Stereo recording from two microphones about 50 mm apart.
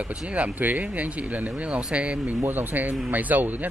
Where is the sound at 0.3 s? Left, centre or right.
Right.